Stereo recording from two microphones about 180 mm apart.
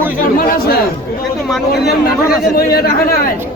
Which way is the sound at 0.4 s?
60° left (ahead or behind).